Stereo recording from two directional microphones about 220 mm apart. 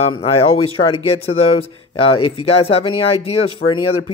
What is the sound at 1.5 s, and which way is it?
Speech, 25° left (ahead or behind).